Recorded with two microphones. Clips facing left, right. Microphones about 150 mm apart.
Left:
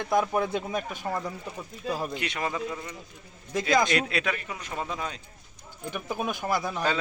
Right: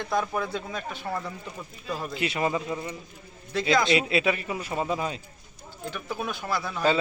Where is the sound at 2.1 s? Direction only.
5° right (ahead or behind).